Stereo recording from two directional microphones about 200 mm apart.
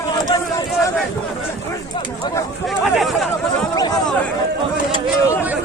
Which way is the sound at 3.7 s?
20° left (ahead or behind).